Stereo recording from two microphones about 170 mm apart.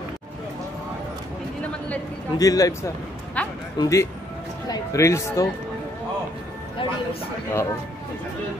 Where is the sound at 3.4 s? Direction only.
10° left (ahead or behind).